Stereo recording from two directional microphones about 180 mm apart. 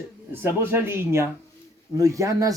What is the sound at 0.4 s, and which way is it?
Speech, 10° right (ahead or behind).